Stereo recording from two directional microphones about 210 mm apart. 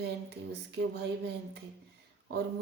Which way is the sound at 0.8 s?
60° right (ahead or behind).